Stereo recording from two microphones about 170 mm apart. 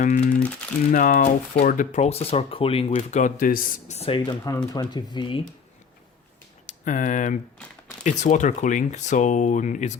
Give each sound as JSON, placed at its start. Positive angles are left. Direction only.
{"t": 0.0, "sound": "speech", "side_deg": 45}
{"t": 3.0, "sound": "speech", "side_deg": 45}
{"t": 6.7, "sound": "speech", "side_deg": 50}